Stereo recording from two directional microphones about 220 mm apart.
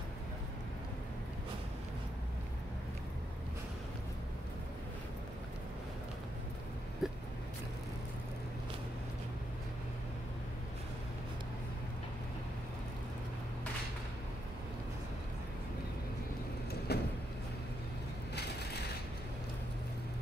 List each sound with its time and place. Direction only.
7.0 s vehicle: centre (ahead or behind)
16.9 s vehicle: 45° left (ahead or behind)